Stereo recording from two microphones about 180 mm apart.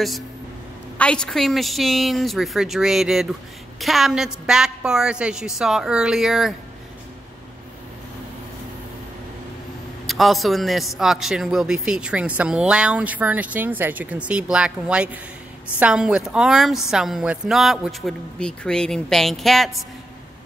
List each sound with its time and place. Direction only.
0.9 s a man's voice: 5° left (ahead or behind)
10.0 s a man's voice: centre (ahead or behind)